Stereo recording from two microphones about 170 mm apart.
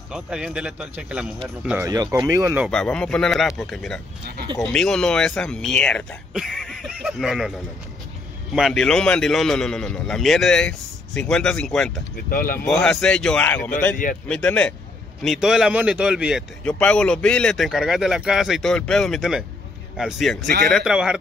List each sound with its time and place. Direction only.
0.1 s a man's voice: 5° right (ahead or behind)
2.1 s speech: 20° right (ahead or behind)
2.7 s a man's voice: 5° left (ahead or behind)
8.5 s a man's voice: centre (ahead or behind)
12.3 s speech: 55° left (ahead or behind)
12.6 s a man's voice: 5° left (ahead or behind)
16.6 s a man's voice: 5° left (ahead or behind)